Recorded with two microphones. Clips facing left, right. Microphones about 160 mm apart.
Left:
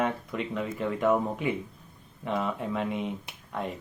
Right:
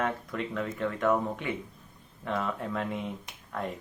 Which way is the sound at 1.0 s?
15° left (ahead or behind).